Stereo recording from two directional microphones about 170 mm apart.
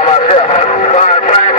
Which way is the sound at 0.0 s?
40° left (ahead or behind).